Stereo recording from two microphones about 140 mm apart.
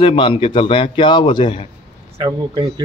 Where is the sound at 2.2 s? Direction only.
35° right (ahead or behind).